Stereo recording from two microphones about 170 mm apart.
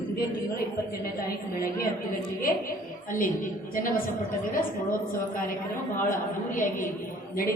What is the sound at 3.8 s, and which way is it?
Speech, 55° left (ahead or behind).